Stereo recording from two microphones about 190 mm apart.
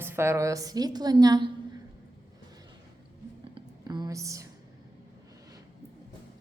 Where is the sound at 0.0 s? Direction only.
15° right (ahead or behind).